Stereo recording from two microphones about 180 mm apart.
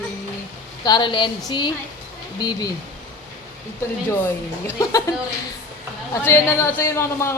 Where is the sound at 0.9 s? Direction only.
25° left (ahead or behind).